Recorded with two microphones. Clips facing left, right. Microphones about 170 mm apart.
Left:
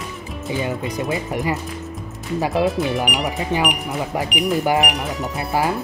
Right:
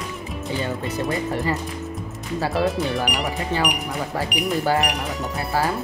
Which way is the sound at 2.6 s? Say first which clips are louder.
Left 2 dB; 5° left (ahead or behind).